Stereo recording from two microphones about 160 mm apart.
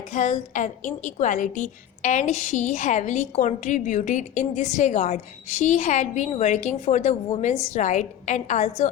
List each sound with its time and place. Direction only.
0.1 s a woman's voice: 50° left (ahead or behind)